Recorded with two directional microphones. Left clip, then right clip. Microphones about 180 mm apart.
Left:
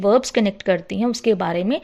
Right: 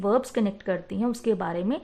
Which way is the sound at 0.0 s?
20° left (ahead or behind).